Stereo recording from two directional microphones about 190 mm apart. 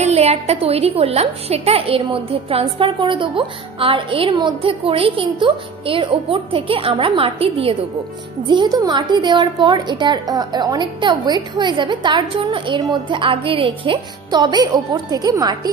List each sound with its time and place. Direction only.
0.0 s a woman's voice: 35° right (ahead or behind)